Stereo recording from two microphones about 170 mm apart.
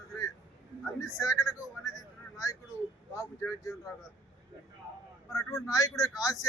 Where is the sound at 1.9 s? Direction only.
20° left (ahead or behind).